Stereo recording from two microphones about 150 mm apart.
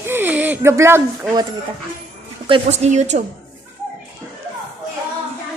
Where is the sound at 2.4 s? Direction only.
40° right (ahead or behind).